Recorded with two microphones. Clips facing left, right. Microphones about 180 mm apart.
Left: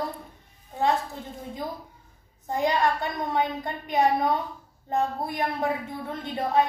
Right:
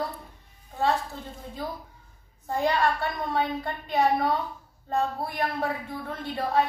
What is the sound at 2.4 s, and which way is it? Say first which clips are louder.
A woman's voice: left 1 dB; 15° left (ahead or behind).